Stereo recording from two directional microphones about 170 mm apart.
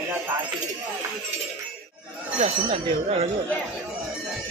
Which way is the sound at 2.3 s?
35° right (ahead or behind).